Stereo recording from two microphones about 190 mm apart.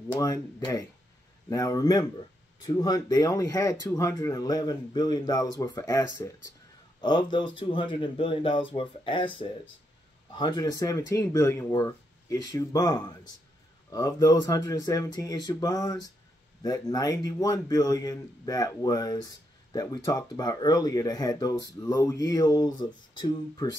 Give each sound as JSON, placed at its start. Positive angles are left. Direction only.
{"t": 0.1, "sound": "a man's voice", "side_deg": 20}